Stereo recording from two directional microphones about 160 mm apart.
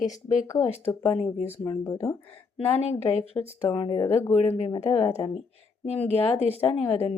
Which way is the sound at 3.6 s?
25° left (ahead or behind).